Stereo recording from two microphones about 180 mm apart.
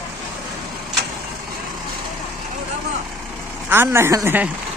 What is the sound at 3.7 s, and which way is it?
Speech, 15° right (ahead or behind).